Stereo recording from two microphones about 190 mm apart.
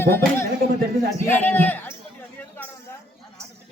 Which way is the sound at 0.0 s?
10° left (ahead or behind).